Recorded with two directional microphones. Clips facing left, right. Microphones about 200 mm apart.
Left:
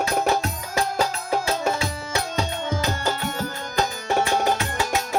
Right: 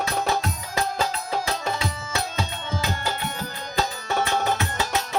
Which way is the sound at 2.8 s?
45° left (ahead or behind).